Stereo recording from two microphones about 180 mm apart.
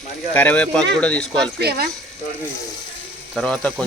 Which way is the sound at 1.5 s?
60° right (ahead or behind).